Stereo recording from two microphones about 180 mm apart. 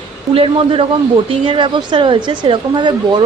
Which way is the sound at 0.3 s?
30° right (ahead or behind).